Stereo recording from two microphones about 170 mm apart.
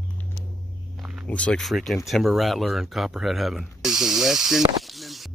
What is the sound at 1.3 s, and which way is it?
Speech, 5° left (ahead or behind).